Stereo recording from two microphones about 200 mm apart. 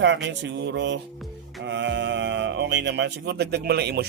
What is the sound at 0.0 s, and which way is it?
Speech, 60° right (ahead or behind).